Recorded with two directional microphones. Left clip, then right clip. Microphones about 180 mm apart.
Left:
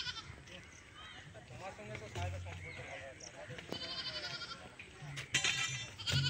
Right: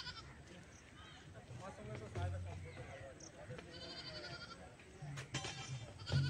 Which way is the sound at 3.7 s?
60° right (ahead or behind).